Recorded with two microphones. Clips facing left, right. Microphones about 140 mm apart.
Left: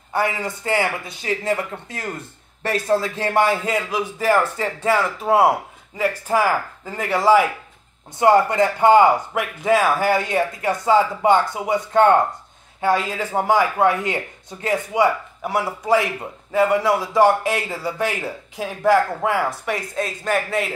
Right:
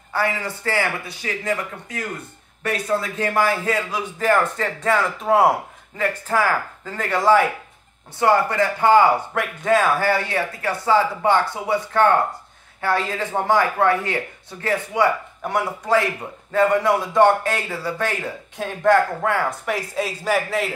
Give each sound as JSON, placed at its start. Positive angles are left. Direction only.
{"t": 0.1, "sound": "a man's voice", "side_deg": 15}
{"t": 19.7, "sound": "speech", "side_deg": -5}